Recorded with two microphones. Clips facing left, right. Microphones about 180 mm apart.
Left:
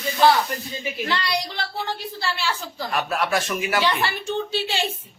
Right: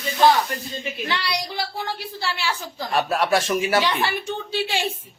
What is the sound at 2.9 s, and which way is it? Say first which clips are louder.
Speech: right 3 dB; 30° right (ahead or behind).